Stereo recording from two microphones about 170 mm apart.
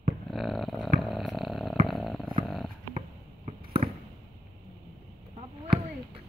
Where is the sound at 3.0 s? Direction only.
35° right (ahead or behind).